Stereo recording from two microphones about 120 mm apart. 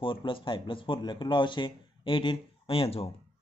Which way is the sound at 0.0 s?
45° left (ahead or behind).